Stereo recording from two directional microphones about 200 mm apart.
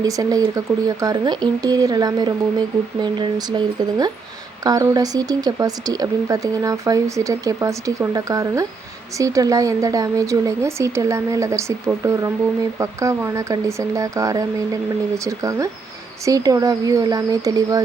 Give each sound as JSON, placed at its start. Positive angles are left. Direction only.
{"t": 0.0, "sound": "speech", "side_deg": -15}